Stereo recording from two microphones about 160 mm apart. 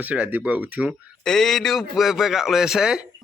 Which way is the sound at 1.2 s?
Centre (ahead or behind).